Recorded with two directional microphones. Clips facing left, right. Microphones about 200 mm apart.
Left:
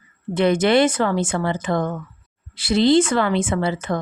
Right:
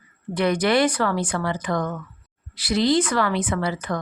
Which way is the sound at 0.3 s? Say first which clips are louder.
Left 4 dB; 25° left (ahead or behind).